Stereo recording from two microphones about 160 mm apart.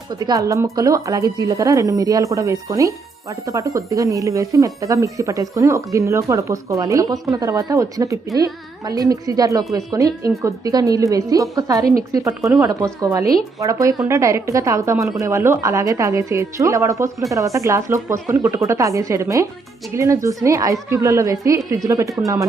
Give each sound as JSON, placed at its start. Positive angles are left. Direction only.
{"t": 0.1, "sound": "speech", "side_deg": -25}